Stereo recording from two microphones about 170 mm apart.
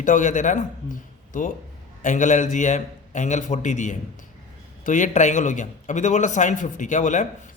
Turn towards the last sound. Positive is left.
turn(degrees=45)  # may be behind; listen again after turning